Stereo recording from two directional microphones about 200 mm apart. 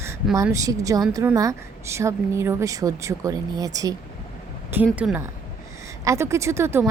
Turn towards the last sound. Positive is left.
turn(degrees=-10)  # may be behind; listen again after turning